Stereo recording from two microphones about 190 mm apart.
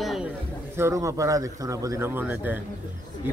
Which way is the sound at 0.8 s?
15° right (ahead or behind).